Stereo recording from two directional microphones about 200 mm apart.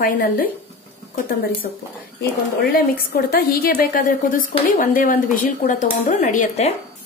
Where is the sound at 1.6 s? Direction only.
40° left (ahead or behind).